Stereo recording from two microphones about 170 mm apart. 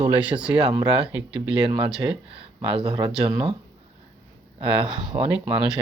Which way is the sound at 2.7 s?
30° right (ahead or behind).